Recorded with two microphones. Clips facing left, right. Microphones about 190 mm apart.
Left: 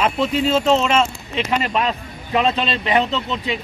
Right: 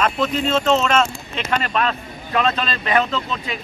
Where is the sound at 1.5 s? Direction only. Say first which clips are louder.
Even; 15° left (ahead or behind).